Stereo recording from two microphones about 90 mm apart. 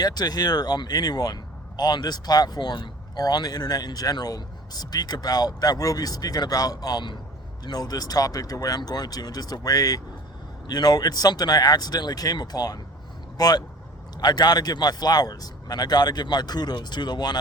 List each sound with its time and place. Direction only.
0.0 s speech: 50° left (ahead or behind)